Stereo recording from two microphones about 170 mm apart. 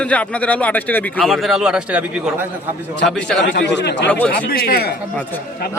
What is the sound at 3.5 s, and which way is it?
Speech, 90° left.